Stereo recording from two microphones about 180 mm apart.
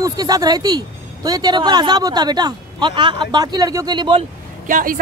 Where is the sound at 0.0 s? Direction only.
20° right (ahead or behind).